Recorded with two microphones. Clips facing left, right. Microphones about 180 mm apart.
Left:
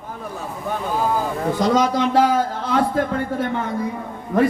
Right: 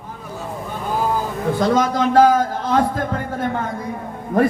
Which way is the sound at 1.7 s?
50° right (ahead or behind).